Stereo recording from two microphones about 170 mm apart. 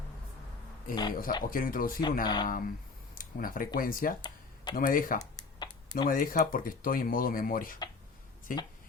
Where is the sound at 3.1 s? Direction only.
55° left (ahead or behind).